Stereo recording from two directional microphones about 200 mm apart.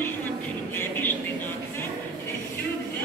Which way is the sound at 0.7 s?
10° left (ahead or behind).